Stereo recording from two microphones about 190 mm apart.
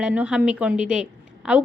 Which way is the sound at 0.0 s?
5° right (ahead or behind).